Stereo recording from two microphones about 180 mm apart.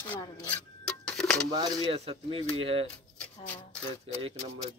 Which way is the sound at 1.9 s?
30° right (ahead or behind).